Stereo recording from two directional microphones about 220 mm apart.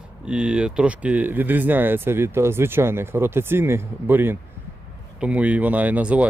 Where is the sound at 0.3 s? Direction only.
5° right (ahead or behind).